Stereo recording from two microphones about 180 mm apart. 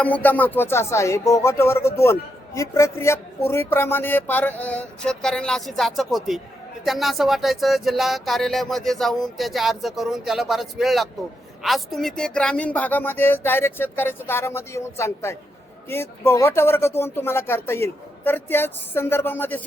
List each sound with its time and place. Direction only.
0.0 s speech: 10° left (ahead or behind)